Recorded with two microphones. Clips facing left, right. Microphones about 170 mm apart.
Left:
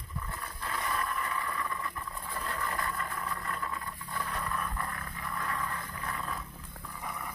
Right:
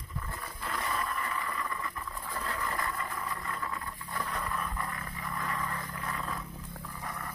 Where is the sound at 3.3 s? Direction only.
5° right (ahead or behind).